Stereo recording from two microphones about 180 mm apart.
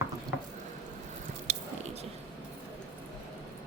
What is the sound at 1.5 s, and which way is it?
Biting, 35° right (ahead or behind).